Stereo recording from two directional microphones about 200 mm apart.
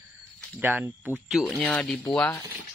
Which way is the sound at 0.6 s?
10° right (ahead or behind).